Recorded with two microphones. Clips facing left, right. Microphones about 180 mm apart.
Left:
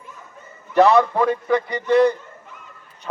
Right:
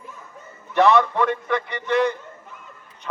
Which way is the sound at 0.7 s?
35° left (ahead or behind).